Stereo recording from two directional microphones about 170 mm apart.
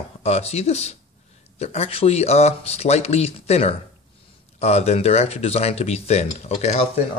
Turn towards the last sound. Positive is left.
turn(degrees=40)  # may be behind; listen again after turning